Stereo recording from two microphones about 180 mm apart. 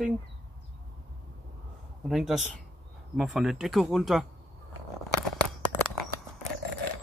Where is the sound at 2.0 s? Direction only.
Centre (ahead or behind).